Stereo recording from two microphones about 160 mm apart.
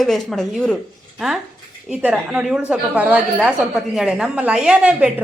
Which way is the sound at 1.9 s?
10° right (ahead or behind).